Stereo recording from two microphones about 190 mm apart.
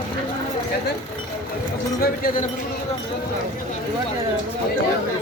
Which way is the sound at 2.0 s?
50° left (ahead or behind).